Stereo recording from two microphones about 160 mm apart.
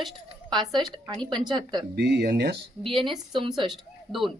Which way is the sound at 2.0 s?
90° right.